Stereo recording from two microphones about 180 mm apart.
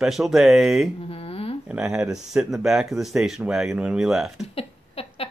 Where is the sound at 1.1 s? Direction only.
30° left (ahead or behind).